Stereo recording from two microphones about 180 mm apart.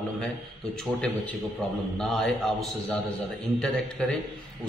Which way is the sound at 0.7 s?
5° left (ahead or behind).